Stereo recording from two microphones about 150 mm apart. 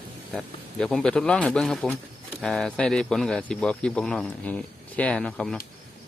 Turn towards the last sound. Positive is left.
turn(degrees=5)  # may be behind; listen again after turning